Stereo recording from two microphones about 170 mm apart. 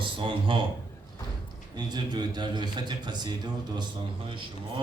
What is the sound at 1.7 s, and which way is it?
A man's voice, 25° right (ahead or behind).